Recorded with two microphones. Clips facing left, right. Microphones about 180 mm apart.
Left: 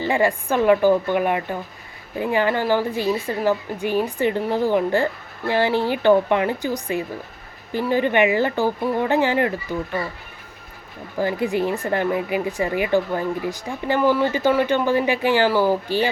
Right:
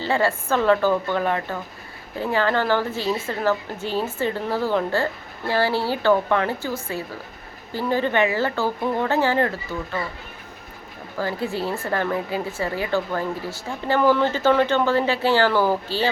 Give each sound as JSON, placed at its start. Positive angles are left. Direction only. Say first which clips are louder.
{"t": 0.0, "sound": "speech", "louder": "left 2 dB", "side_deg": 15}
{"t": 11.2, "sound": "speech", "louder": "left 4 dB", "side_deg": 15}